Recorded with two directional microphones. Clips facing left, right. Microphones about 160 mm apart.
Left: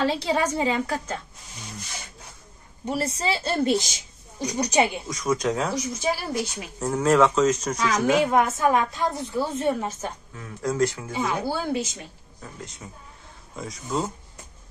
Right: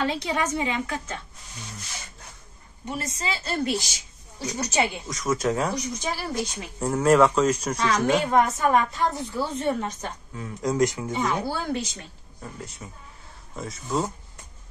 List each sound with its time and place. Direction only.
0.0 s a woman's voice: 30° left (ahead or behind)
2.8 s a woman's voice: 35° left (ahead or behind); by 5.0 s 15° left (ahead or behind)
5.0 s speech: centre (ahead or behind)
7.0 s speech: 5° right (ahead or behind)
7.8 s a woman's voice: 10° left (ahead or behind)
10.3 s speech: 15° right (ahead or behind)
11.0 s speech: centre (ahead or behind)
13.6 s speech: centre (ahead or behind)